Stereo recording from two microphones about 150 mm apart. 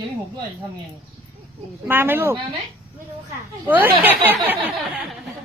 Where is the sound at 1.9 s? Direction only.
15° right (ahead or behind).